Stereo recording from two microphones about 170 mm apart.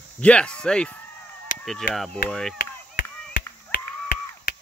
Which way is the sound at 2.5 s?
70° left (ahead or behind).